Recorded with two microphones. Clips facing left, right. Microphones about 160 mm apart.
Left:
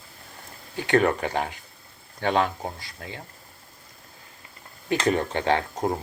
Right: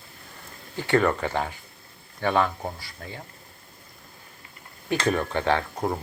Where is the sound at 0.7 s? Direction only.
20° left (ahead or behind).